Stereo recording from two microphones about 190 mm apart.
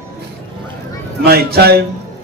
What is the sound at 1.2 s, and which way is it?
Speech, 55° right (ahead or behind).